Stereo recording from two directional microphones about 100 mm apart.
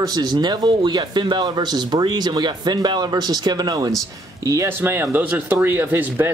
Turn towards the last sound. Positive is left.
turn(degrees=-20)  # may be behind; listen again after turning